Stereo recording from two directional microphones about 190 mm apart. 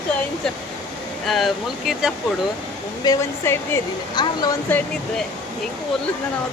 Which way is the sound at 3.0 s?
15° left (ahead or behind).